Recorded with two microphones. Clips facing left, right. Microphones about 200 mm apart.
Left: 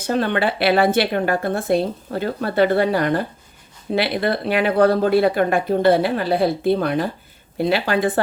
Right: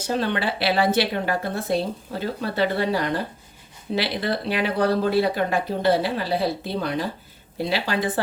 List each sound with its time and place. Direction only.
0.0 s a woman's voice: 55° left (ahead or behind)